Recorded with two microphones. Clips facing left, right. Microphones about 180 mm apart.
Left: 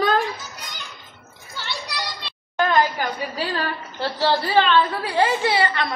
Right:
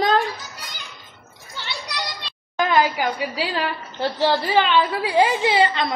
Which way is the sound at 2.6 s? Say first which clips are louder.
Right 1 dB; 10° right (ahead or behind).